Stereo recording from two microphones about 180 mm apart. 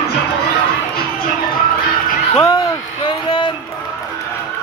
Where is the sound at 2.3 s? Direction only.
15° left (ahead or behind).